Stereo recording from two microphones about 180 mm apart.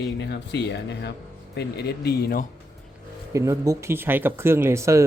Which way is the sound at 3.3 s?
15° right (ahead or behind).